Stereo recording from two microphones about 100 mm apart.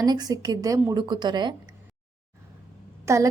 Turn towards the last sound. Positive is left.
turn(degrees=-30)  # may be behind; listen again after turning